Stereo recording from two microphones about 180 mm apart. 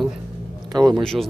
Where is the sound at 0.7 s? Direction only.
20° right (ahead or behind).